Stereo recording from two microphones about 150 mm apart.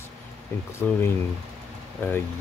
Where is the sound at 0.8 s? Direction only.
15° left (ahead or behind).